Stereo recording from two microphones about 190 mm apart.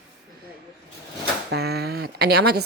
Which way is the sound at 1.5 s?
60° right (ahead or behind).